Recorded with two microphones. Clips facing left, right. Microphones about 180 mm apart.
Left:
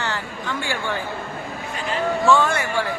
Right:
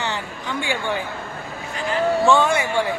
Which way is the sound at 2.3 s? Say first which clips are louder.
Left 1 dB; 20° right (ahead or behind).